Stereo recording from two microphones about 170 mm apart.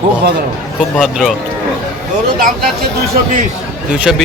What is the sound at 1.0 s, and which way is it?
Speech, 5° right (ahead or behind).